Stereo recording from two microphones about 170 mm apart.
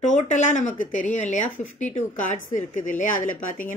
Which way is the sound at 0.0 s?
45° left (ahead or behind).